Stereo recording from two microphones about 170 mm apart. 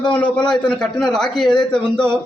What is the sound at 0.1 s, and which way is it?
A man's voice, 5° left (ahead or behind).